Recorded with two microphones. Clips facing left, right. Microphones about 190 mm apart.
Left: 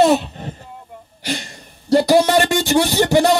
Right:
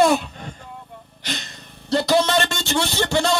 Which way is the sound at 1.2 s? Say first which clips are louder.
Left 6 dB; 10° left (ahead or behind).